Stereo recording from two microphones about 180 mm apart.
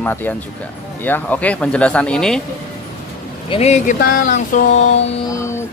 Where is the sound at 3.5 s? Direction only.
35° left (ahead or behind).